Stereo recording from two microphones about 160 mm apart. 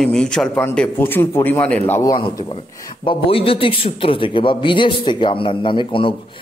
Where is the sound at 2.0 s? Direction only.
30° left (ahead or behind).